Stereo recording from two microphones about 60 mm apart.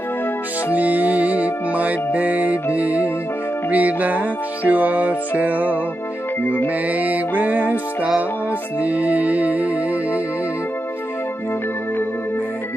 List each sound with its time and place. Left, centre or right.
0.7 s music: right
6.9 s music: right